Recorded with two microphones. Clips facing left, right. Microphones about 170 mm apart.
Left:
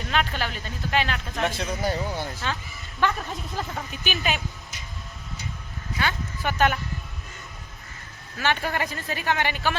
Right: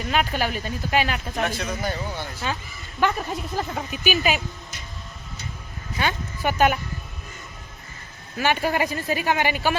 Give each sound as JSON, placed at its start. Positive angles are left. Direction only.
{"t": 0.1, "sound": "speech", "side_deg": -10}
{"t": 1.5, "sound": "speech", "side_deg": 25}
{"t": 2.4, "sound": "speech", "side_deg": -10}
{"t": 6.0, "sound": "speech", "side_deg": -15}
{"t": 8.4, "sound": "speech", "side_deg": -10}